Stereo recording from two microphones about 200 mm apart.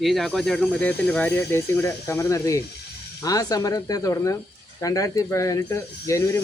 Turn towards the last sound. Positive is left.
turn(degrees=15)  # may be behind; listen again after turning